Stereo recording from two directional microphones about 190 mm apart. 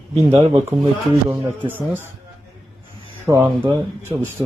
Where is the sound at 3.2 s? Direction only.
15° right (ahead or behind).